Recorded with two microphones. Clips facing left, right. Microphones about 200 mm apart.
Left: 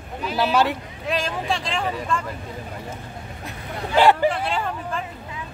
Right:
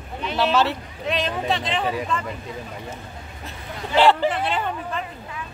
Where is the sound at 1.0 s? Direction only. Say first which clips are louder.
Right 1 dB; centre (ahead or behind).